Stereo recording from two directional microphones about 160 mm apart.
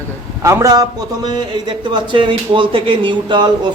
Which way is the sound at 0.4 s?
20° right (ahead or behind).